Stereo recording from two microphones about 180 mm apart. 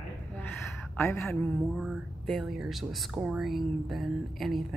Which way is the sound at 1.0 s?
15° left (ahead or behind).